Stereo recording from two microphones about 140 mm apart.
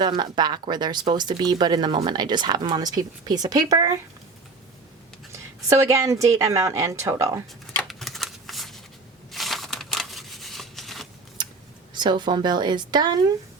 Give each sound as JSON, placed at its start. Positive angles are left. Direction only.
{"t": 0.0, "sound": "a woman's voice", "side_deg": -30}
{"t": 5.6, "sound": "speech", "side_deg": -20}
{"t": 7.9, "sound": "shuffling cards", "side_deg": 0}
{"t": 9.3, "sound": "a sound", "side_deg": 0}
{"t": 11.4, "sound": "a sound", "side_deg": -30}
{"t": 11.9, "sound": "a woman's voice", "side_deg": -30}